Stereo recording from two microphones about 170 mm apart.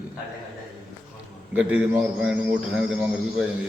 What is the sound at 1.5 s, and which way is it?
Speech, 10° right (ahead or behind).